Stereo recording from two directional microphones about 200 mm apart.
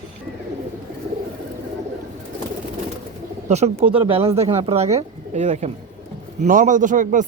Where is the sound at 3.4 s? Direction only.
35° right (ahead or behind).